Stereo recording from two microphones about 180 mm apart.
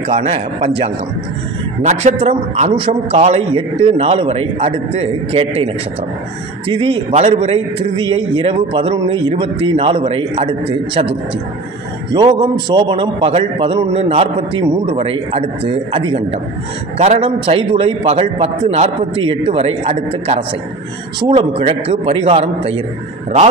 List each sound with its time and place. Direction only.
0.1 s a man's voice: 35° right (ahead or behind)
6.7 s a man's voice: 30° right (ahead or behind)